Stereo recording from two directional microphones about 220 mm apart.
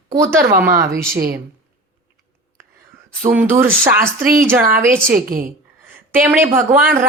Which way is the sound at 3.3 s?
10° right (ahead or behind).